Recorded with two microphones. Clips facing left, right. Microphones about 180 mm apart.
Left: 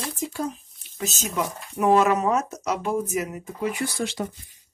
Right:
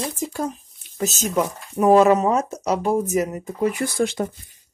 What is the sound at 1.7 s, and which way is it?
Speech, 35° right (ahead or behind).